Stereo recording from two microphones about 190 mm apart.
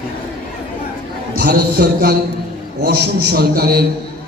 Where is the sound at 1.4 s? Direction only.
55° right (ahead or behind).